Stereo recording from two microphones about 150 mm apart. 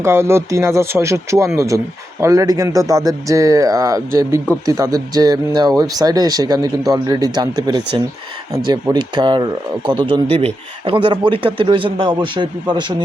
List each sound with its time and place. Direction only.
0.0 s speech: 15° right (ahead or behind); by 12.9 s 30° right (ahead or behind)